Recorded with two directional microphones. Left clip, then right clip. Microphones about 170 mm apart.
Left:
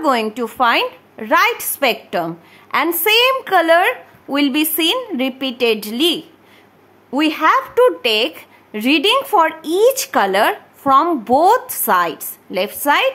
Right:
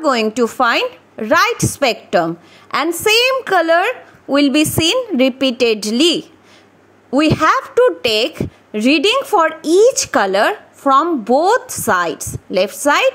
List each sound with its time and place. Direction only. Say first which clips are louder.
0.0 s a woman's voice: right 2 dB; 20° right (ahead or behind)
7.7 s a woman's voice: right 1 dB; 15° right (ahead or behind)